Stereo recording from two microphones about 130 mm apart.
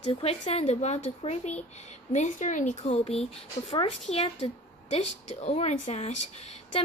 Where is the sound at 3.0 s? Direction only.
50° left (ahead or behind).